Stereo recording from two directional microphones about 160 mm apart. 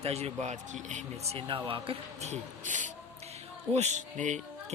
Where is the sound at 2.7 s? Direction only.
50° right (ahead or behind).